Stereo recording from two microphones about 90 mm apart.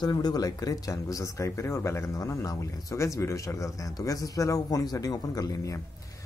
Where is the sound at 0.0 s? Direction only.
50° left (ahead or behind).